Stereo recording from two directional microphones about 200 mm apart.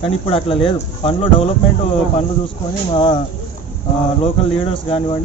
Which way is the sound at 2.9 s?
25° left (ahead or behind).